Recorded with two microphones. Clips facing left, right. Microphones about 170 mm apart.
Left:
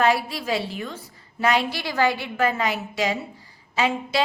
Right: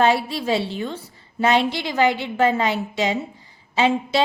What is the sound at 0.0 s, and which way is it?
A woman's voice, 25° right (ahead or behind).